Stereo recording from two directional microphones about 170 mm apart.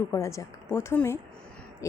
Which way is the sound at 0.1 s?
20° left (ahead or behind).